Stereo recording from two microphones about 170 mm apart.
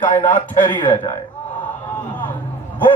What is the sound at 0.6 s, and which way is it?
Speech, 25° left (ahead or behind).